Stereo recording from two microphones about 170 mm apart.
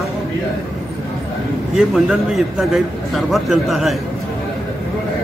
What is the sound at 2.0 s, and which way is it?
A man's voice, centre (ahead or behind).